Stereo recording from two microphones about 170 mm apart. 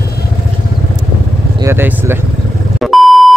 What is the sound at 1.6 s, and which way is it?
Speech, 15° right (ahead or behind).